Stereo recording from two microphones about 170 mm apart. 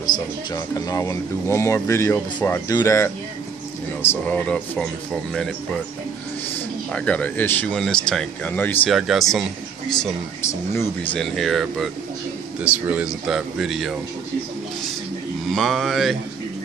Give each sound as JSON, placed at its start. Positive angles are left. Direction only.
{"t": 0.0, "sound": "speech", "side_deg": 20}
{"t": 6.9, "sound": "speech", "side_deg": 5}
{"t": 8.9, "sound": "speech", "side_deg": 0}
{"t": 11.1, "sound": "speech", "side_deg": 0}
{"t": 15.5, "sound": "speech", "side_deg": 0}